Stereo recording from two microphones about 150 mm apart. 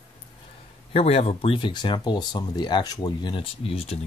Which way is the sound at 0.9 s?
40° left (ahead or behind).